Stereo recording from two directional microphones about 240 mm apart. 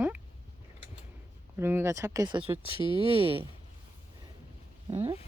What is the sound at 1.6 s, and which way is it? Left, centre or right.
Speech, centre.